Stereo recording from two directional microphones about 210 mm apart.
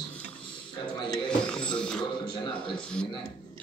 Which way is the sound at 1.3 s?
5° left (ahead or behind).